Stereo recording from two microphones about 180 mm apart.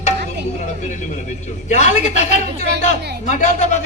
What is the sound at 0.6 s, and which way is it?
Vehicle, 40° left (ahead or behind).